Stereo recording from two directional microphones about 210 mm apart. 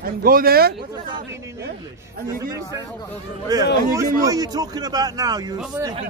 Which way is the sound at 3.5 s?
20° right (ahead or behind).